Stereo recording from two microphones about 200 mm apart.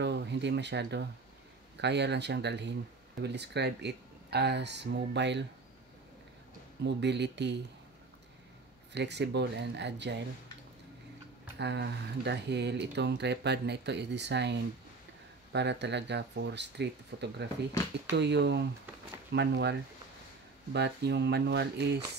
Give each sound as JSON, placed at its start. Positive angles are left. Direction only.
{"t": 0.0, "sound": "speech", "side_deg": -60}
{"t": 6.8, "sound": "speech", "side_deg": -60}
{"t": 8.9, "sound": "speech", "side_deg": -60}
{"t": 11.5, "sound": "speech", "side_deg": -60}
{"t": 20.7, "sound": "speech", "side_deg": -55}